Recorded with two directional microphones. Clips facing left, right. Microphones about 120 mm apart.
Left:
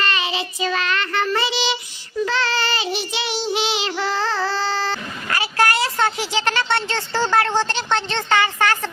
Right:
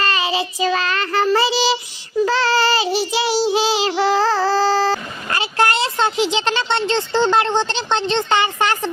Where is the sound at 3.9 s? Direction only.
40° right (ahead or behind).